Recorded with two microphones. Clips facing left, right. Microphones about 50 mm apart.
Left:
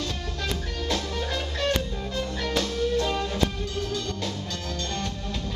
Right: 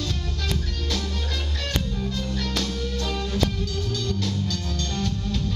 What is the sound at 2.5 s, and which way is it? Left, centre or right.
Music, centre.